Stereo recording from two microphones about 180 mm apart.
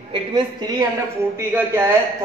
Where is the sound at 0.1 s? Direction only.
25° right (ahead or behind).